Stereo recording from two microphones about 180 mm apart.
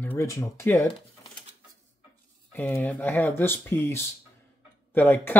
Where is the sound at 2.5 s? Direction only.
10° left (ahead or behind).